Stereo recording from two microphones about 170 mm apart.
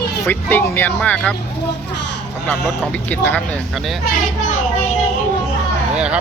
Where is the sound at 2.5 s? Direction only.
5° left (ahead or behind).